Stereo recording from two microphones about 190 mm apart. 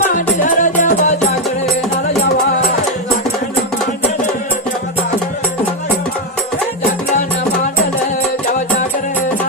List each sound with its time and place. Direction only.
0.1 s music: 45° left (ahead or behind)